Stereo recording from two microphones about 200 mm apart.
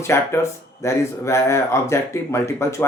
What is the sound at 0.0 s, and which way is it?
Speech, 15° left (ahead or behind).